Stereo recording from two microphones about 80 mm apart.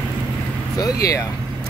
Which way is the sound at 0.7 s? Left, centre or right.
Left.